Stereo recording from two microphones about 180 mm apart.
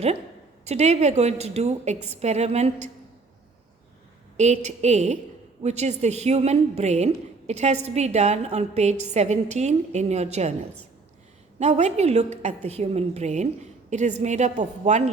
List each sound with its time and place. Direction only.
0.6 s a woman's voice: 35° right (ahead or behind)
4.4 s a woman's voice: 40° right (ahead or behind)
11.6 s a woman's voice: 40° right (ahead or behind)